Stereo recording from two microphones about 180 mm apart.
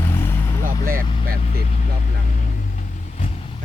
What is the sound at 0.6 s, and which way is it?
Vehicle, 50° right (ahead or behind).